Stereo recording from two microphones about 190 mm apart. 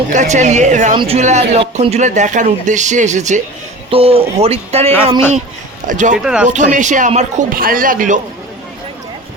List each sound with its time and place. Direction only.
0.1 s a man's voice: 40° right (ahead or behind)
5.9 s a man's voice: 40° right (ahead or behind)
6.2 s speech: 5° right (ahead or behind)
6.5 s a man's voice: 40° right (ahead or behind)